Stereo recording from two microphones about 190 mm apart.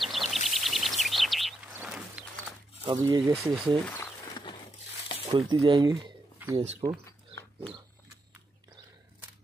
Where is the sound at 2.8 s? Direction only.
20° right (ahead or behind).